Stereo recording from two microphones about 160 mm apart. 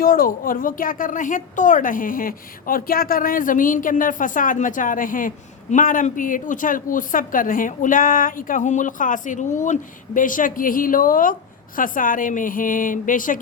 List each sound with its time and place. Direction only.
0.0 s speech: 60° left (ahead or behind)